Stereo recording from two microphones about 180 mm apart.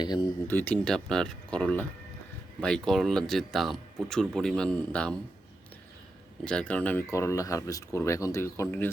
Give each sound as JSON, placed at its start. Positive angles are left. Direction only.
{"t": 0.0, "sound": "speech", "side_deg": 25}
{"t": 0.4, "sound": "speech", "side_deg": 10}
{"t": 6.4, "sound": "speech", "side_deg": 5}